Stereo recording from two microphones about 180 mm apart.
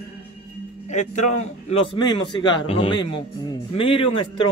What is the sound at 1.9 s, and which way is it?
Speech, 25° left (ahead or behind).